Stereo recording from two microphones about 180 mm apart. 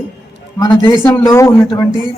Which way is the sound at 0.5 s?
20° left (ahead or behind).